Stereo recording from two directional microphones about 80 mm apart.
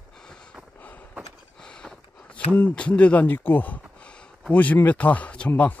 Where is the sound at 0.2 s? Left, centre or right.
Centre.